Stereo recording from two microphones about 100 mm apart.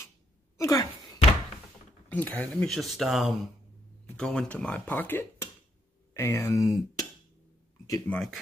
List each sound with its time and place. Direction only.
0.6 s speech: 35° left (ahead or behind)
2.0 s speech: 15° left (ahead or behind)
2.7 s speech: centre (ahead or behind); by 7.1 s 35° left (ahead or behind)
8.1 s speech: 15° left (ahead or behind)